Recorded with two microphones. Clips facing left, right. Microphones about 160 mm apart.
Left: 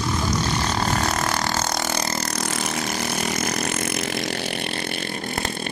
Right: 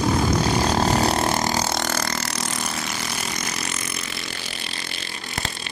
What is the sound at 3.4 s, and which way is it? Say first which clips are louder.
Chainsaw: left 6 dB; 55° left (ahead or behind).